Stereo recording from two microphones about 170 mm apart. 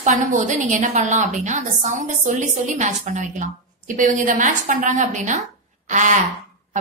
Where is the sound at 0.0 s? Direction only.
50° right (ahead or behind).